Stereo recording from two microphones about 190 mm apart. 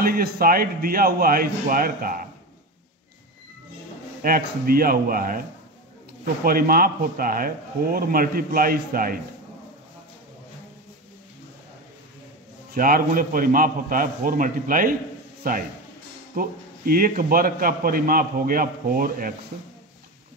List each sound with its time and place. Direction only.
0.0 s a man's voice: 50° right (ahead or behind)
4.2 s a man's voice: 50° right (ahead or behind)
6.4 s a man's voice: 50° right (ahead or behind)
12.7 s a man's voice: 50° right (ahead or behind)